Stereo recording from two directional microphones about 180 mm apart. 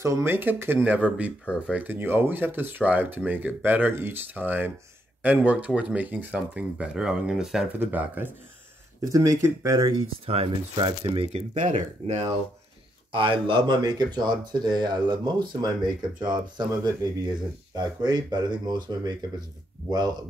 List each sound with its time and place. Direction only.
0.0 s speech: 15° right (ahead or behind); by 12.3 s 40° right (ahead or behind)
13.1 s speech: 30° right (ahead or behind)